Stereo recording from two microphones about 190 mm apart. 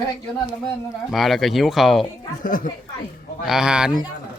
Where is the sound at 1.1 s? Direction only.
Centre (ahead or behind).